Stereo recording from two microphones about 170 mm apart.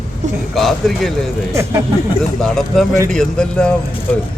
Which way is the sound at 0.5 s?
Centre (ahead or behind).